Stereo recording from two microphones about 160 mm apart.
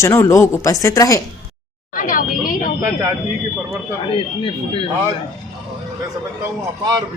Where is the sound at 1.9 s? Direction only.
60° left (ahead or behind).